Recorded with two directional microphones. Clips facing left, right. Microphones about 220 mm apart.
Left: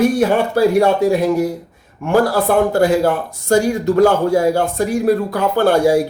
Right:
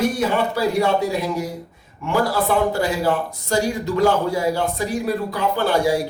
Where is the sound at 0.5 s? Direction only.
50° left (ahead or behind).